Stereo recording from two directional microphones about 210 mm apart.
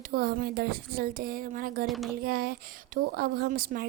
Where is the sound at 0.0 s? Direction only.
45° right (ahead or behind).